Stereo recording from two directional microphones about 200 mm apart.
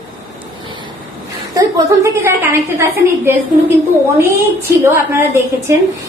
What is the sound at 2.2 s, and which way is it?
Speech, 15° right (ahead or behind).